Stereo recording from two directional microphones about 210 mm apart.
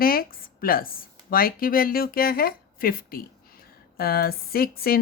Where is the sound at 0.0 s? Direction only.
45° left (ahead or behind).